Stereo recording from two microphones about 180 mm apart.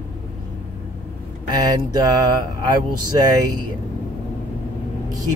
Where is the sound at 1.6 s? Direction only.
20° right (ahead or behind).